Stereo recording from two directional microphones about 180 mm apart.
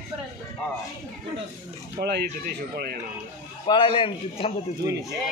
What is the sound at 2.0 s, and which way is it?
Speech, 65° right (ahead or behind).